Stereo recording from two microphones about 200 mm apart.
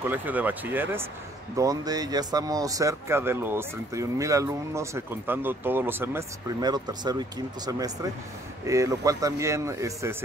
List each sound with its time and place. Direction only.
0.1 s speech: 10° right (ahead or behind)